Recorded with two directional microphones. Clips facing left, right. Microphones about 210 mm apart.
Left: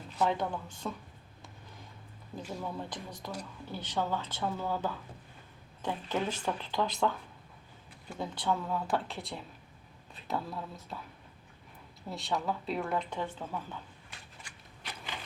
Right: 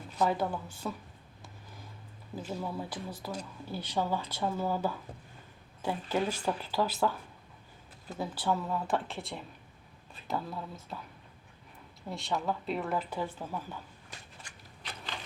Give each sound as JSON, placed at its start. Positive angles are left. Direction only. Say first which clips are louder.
{"t": 0.3, "sound": "speech", "louder": "right 1 dB", "side_deg": -5}
{"t": 2.3, "sound": "speech", "louder": "right 2 dB", "side_deg": -5}
{"t": 8.2, "sound": "speech", "louder": "right 1 dB", "side_deg": -5}
{"t": 12.0, "sound": "speech", "louder": "right 1 dB", "side_deg": 0}